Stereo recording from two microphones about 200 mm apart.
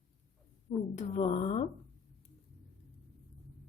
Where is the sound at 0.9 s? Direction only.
30° left (ahead or behind).